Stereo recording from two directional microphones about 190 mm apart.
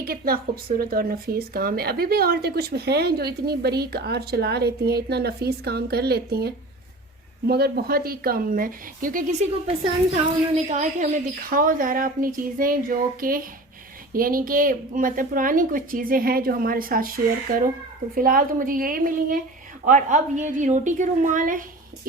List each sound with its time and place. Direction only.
0.0 s a woman's voice: 50° right (ahead or behind)
10.5 s a woman's voice: 40° right (ahead or behind)